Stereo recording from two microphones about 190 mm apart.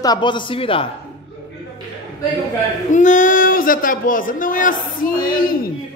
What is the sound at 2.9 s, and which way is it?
Speech, 40° left (ahead or behind).